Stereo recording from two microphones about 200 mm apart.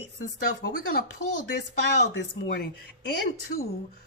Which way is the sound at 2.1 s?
55° left (ahead or behind).